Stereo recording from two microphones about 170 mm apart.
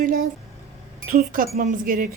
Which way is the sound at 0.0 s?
55° right (ahead or behind).